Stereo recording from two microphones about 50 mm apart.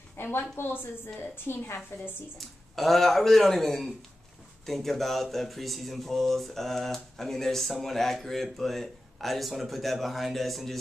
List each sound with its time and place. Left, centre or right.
0.2 s a woman's voice: left
1.5 s a woman's voice: left
2.3 s speech: centre